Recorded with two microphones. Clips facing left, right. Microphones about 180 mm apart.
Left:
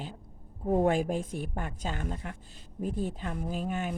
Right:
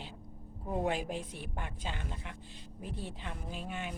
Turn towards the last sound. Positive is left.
turn(degrees=45)  # may be behind; listen again after turning